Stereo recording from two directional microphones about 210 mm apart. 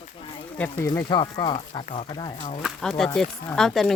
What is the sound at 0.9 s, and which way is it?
Speech, 20° left (ahead or behind).